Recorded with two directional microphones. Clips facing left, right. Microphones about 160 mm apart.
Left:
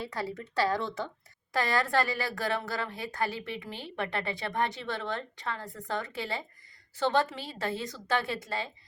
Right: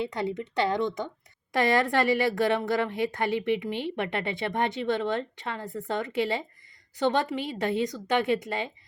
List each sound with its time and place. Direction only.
0.0 s a woman's voice: 20° right (ahead or behind)